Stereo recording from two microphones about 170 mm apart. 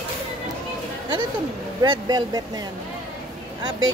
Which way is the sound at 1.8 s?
25° right (ahead or behind).